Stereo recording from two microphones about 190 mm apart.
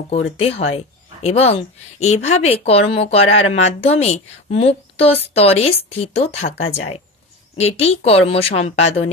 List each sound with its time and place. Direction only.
0.4 s a woman's voice: 35° left (ahead or behind)
7.5 s speech: 35° left (ahead or behind)